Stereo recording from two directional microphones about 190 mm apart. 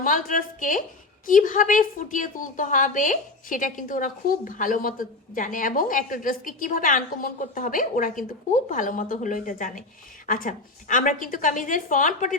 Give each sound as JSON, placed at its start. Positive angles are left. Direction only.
{"t": 0.0, "sound": "a woman's voice", "side_deg": 45}